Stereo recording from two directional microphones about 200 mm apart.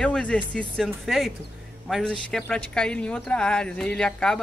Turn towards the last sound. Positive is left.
turn(degrees=5)  # may be behind; listen again after turning